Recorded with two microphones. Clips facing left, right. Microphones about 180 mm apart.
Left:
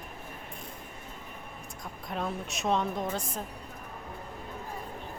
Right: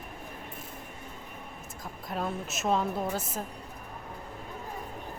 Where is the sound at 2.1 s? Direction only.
Centre (ahead or behind).